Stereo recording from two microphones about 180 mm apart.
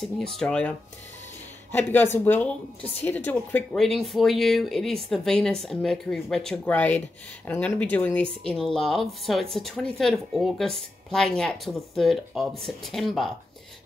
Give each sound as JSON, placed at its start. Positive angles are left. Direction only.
{"t": 0.0, "sound": "speech", "side_deg": 5}